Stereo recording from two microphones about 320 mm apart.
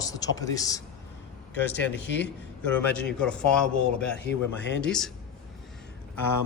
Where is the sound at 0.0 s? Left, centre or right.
Centre.